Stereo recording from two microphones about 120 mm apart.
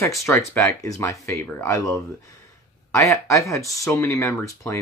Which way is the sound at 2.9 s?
25° left (ahead or behind).